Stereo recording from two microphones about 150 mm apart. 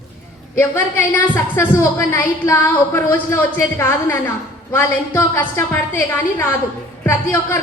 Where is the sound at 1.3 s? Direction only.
15° left (ahead or behind).